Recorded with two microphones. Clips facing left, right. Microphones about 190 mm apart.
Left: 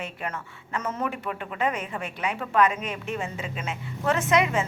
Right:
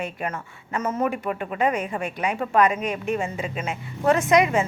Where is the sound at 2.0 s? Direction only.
10° right (ahead or behind).